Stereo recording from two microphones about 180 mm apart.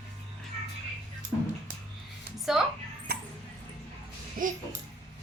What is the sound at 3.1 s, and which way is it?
Dog, 60° right (ahead or behind).